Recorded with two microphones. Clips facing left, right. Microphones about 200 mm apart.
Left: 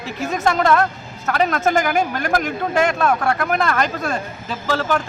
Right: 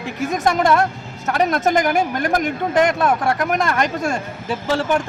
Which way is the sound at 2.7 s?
15° right (ahead or behind).